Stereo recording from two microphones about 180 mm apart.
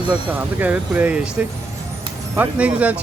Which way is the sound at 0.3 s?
10° right (ahead or behind).